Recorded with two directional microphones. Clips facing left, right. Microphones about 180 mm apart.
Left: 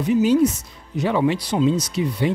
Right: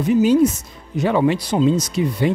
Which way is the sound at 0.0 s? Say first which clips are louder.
Right 2 dB; 50° right (ahead or behind).